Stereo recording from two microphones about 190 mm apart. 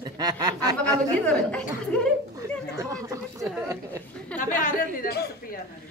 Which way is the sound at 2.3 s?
15° right (ahead or behind).